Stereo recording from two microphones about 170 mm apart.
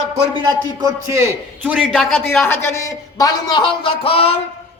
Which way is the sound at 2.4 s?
15° left (ahead or behind).